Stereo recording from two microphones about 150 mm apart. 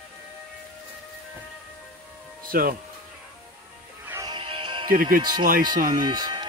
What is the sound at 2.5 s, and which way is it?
Speech, 75° right (ahead or behind).